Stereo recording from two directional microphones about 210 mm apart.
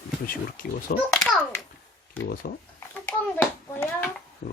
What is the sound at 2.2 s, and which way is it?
Speech, 40° left (ahead or behind).